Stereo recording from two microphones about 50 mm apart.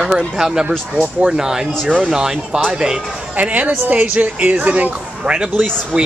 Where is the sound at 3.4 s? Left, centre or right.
Right.